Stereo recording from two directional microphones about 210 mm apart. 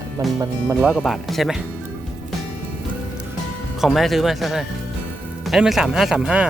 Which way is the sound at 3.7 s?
Centre (ahead or behind).